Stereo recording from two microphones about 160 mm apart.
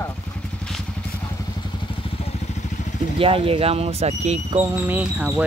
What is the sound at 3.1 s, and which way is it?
Speech, 35° right (ahead or behind).